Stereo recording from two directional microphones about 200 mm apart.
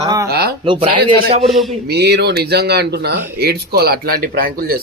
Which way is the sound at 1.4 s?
Centre (ahead or behind).